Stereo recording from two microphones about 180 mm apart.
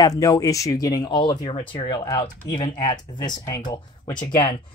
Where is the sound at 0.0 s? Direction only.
20° left (ahead or behind).